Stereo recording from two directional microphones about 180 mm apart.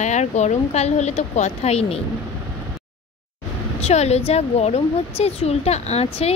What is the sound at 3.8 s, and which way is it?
Speech, 35° left (ahead or behind).